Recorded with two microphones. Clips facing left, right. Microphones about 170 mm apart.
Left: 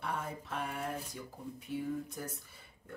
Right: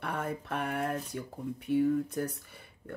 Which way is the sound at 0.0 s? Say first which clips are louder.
Right 4 dB; 60° right (ahead or behind).